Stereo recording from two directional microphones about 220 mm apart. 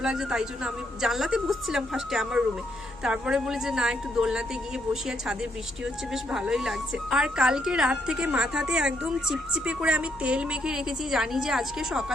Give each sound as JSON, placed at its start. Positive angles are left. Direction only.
{"t": 0.0, "sound": "a woman's voice", "side_deg": -5}